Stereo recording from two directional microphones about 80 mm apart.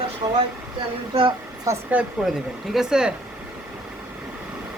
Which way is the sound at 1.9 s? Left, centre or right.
Centre.